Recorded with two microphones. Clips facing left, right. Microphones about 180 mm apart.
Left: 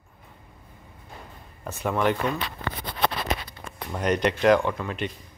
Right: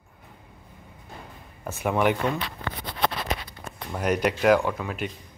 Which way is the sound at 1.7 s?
10° right (ahead or behind).